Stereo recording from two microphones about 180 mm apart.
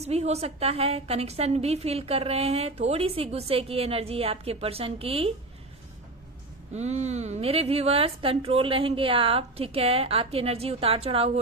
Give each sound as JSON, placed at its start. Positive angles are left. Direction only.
{"t": 0.0, "sound": "a woman's voice", "side_deg": -35}
{"t": 6.7, "sound": "a woman's voice", "side_deg": -40}